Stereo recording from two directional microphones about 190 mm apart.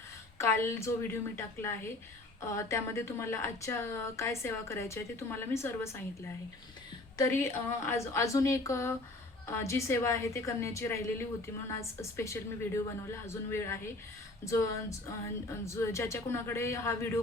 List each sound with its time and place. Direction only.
0.3 s a woman's voice: 15° left (ahead or behind)
7.2 s a woman's voice: 15° left (ahead or behind)